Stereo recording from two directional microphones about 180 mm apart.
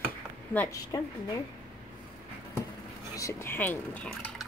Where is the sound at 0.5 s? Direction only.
10° left (ahead or behind).